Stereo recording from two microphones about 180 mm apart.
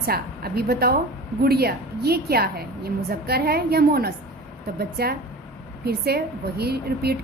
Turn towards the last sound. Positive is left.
turn(degrees=-60)  # may be behind; listen again after turning